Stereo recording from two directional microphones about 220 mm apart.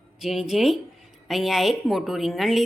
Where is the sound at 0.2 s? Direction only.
Centre (ahead or behind).